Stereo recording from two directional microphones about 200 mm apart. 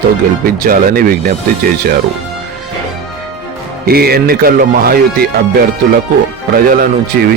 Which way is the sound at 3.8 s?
50° right (ahead or behind).